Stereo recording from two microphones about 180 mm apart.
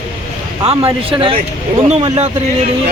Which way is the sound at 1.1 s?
30° right (ahead or behind).